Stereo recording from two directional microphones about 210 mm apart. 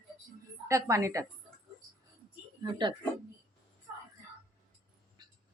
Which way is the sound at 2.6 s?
20° right (ahead or behind).